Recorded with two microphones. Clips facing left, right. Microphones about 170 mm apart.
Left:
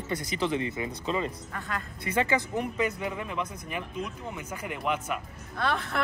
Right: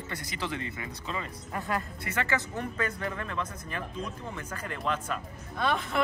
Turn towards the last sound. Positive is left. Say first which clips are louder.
# even
turn(degrees=-15)  # may be behind; listen again after turning